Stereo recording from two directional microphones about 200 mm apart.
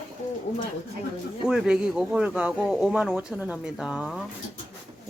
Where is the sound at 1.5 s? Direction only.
5° right (ahead or behind).